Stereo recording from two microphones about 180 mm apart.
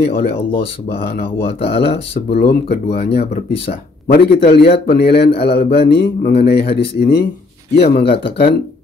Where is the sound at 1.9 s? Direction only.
40° left (ahead or behind).